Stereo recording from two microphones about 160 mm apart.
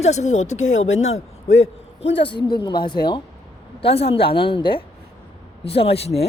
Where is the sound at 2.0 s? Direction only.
35° left (ahead or behind).